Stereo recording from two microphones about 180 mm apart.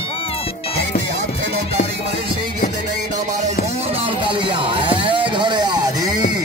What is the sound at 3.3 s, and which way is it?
Music, 40° right (ahead or behind).